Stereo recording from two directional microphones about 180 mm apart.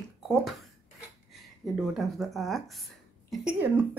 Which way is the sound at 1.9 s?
Centre (ahead or behind).